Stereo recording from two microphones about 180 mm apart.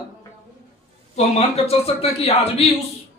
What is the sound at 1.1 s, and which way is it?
A man's voice, 35° left (ahead or behind).